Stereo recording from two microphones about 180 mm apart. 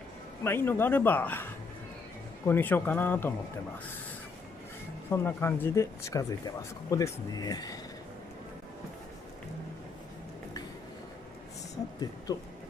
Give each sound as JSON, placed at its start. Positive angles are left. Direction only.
{"t": 0.4, "sound": "speech", "side_deg": 10}
{"t": 5.1, "sound": "speech", "side_deg": 15}